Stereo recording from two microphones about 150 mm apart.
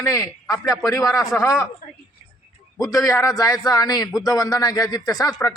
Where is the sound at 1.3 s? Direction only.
5° left (ahead or behind).